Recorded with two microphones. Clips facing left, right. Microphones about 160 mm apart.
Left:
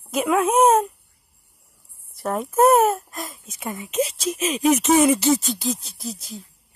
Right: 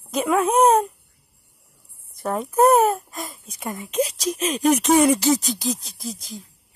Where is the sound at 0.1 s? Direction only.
5° left (ahead or behind).